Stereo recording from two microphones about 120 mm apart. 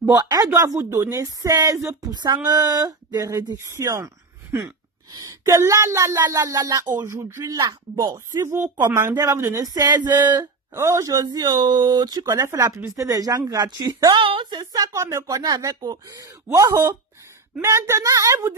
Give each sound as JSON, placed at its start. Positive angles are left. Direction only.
{"t": 0.1, "sound": "speech", "side_deg": -30}
{"t": 0.7, "sound": "speech", "side_deg": -20}
{"t": 10.3, "sound": "speech", "side_deg": -20}
{"t": 12.3, "sound": "speech", "side_deg": -25}